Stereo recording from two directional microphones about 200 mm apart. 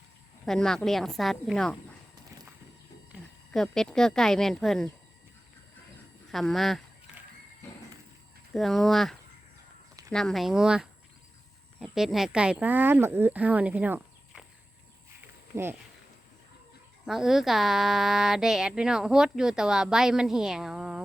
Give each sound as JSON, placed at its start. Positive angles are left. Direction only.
{"t": 0.4, "sound": "speech", "side_deg": 0}
{"t": 3.1, "sound": "speech", "side_deg": 0}
{"t": 6.3, "sound": "speech", "side_deg": 0}
{"t": 8.5, "sound": "speech", "side_deg": 0}
{"t": 17.1, "sound": "speech", "side_deg": 0}